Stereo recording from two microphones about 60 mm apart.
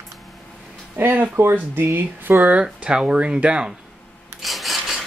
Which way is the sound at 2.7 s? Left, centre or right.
Centre.